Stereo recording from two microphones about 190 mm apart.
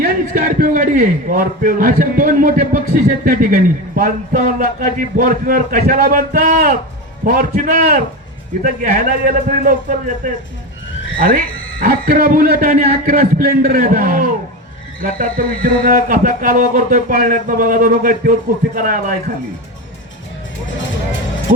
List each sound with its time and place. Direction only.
0.0 s a man's voice: 50° right (ahead or behind)
11.2 s a man's voice: 45° right (ahead or behind)